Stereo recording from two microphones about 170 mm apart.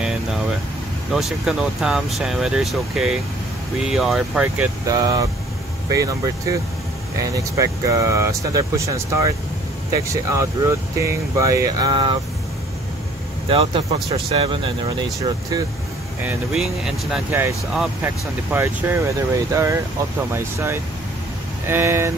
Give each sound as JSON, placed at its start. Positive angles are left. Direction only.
{"t": 1.1, "sound": "speech", "side_deg": -5}
{"t": 4.8, "sound": "speech", "side_deg": -20}
{"t": 10.3, "sound": "speech", "side_deg": -20}
{"t": 13.5, "sound": "speech", "side_deg": -35}
{"t": 16.3, "sound": "speech", "side_deg": -5}